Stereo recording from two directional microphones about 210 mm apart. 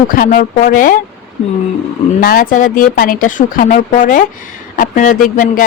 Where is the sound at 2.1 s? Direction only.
45° left (ahead or behind).